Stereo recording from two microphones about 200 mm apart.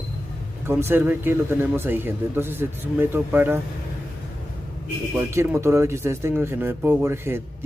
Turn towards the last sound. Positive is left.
turn(degrees=-10)  # may be behind; listen again after turning